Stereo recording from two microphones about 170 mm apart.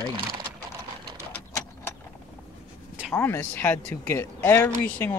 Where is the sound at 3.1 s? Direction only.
10° left (ahead or behind).